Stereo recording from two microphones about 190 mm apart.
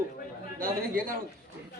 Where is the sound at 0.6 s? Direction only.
50° right (ahead or behind).